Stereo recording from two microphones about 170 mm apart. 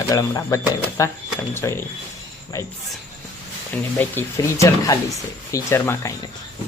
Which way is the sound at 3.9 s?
15° left (ahead or behind).